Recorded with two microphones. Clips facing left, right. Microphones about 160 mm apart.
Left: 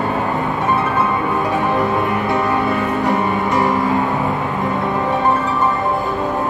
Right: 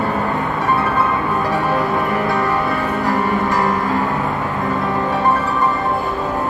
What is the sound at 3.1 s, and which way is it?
Music, 20° left (ahead or behind).